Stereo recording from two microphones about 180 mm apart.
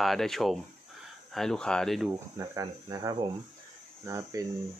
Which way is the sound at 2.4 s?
20° right (ahead or behind).